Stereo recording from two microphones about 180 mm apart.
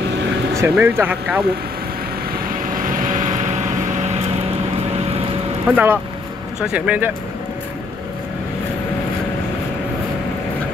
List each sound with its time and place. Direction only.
0.6 s speech: 15° right (ahead or behind)
2.6 s vehicle: 50° right (ahead or behind)
5.7 s speech: 10° right (ahead or behind)